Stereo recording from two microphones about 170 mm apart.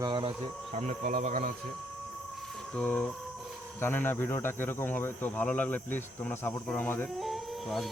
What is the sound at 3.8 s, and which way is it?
Speech, 10° left (ahead or behind).